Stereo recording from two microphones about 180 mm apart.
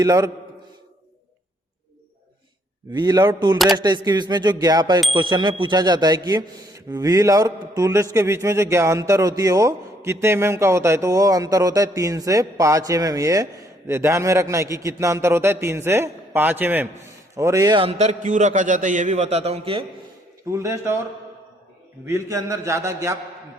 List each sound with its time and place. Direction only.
0.0 s speech: 20° right (ahead or behind)
2.9 s a man's voice: 20° right (ahead or behind)
20.5 s a man's voice: 15° right (ahead or behind)
22.0 s a man's voice: 15° right (ahead or behind)